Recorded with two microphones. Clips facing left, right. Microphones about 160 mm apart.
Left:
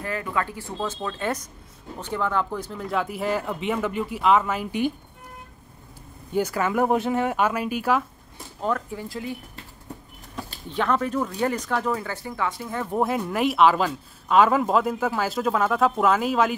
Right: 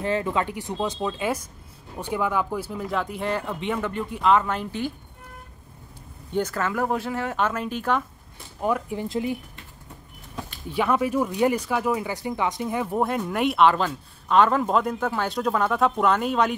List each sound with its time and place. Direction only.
0.0 s speech: 25° right (ahead or behind); by 4.9 s 15° left (ahead or behind)
6.3 s speech: 10° left (ahead or behind)
8.5 s speech: 10° right (ahead or behind)
10.7 s speech: 10° right (ahead or behind)
12.9 s speech: centre (ahead or behind)